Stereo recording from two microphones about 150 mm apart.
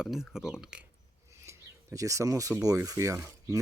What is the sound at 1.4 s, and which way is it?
Speech, 20° right (ahead or behind).